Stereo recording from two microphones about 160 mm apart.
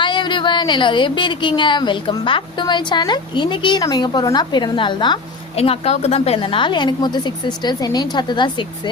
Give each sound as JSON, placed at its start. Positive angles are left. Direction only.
{"t": 0.0, "sound": "speech", "side_deg": 30}